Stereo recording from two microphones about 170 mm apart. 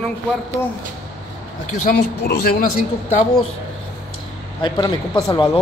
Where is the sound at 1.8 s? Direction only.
65° left (ahead or behind).